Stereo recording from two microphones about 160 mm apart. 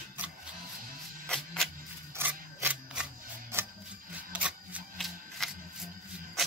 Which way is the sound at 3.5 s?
15° right (ahead or behind).